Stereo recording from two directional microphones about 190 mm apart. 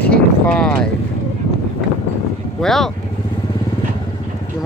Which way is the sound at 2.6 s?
Centre (ahead or behind).